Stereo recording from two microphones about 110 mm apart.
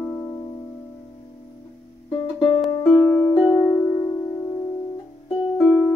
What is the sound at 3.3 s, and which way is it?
Music, 45° left (ahead or behind).